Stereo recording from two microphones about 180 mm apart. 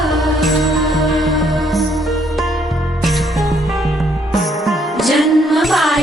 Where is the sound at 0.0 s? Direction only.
Centre (ahead or behind).